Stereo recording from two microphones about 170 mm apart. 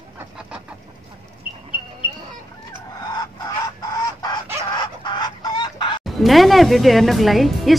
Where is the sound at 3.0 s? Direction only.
25° left (ahead or behind).